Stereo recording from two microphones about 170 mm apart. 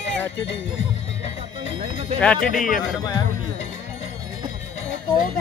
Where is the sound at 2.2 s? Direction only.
5° left (ahead or behind).